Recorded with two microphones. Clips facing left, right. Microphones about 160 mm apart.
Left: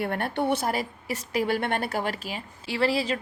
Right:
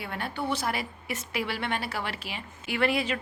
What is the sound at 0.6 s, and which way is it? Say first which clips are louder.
A woman's voice: left 3 dB; 40° left (ahead or behind).